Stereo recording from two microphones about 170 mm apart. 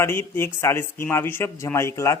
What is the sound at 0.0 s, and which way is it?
Speech, 15° left (ahead or behind).